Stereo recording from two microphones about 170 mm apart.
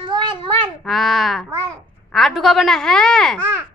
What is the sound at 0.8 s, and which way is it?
A child's voice, centre (ahead or behind).